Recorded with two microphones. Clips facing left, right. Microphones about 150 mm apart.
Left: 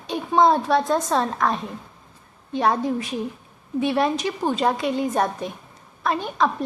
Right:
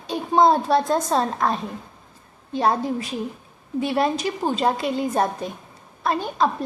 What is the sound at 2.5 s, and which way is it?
A woman's voice, 30° right (ahead or behind).